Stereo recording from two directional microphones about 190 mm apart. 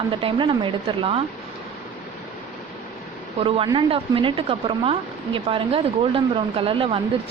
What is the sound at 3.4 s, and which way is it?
Speech, 25° right (ahead or behind).